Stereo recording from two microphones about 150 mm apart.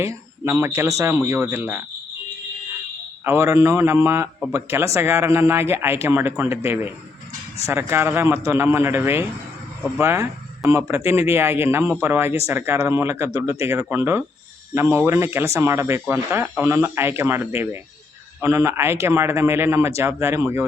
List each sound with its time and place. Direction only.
0.0 s speech: 20° right (ahead or behind)
3.2 s speech: 20° right (ahead or behind)